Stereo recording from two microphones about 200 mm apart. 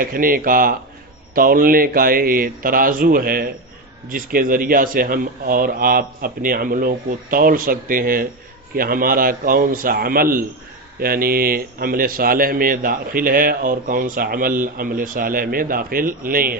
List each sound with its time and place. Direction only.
0.0 s speech: 45° right (ahead or behind)